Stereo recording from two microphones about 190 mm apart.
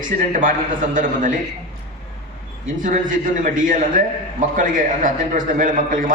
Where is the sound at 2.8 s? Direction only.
45° right (ahead or behind).